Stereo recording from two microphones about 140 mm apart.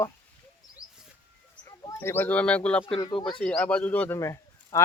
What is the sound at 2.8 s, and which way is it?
Speech, 35° left (ahead or behind).